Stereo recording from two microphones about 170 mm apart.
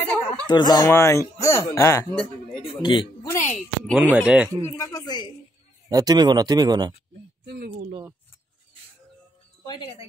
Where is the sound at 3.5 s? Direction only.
Centre (ahead or behind).